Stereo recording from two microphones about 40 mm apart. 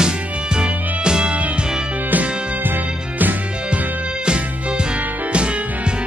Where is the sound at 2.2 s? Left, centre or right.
Right.